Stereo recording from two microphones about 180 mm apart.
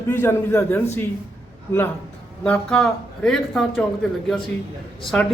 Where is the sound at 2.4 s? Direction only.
5° left (ahead or behind).